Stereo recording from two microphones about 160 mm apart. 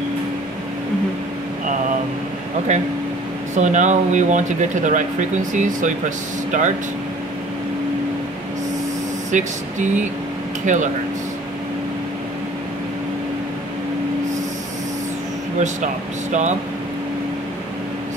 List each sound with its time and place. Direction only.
3.5 s speech: 50° right (ahead or behind)
9.3 s speech: 50° right (ahead or behind)
15.6 s speech: 50° right (ahead or behind)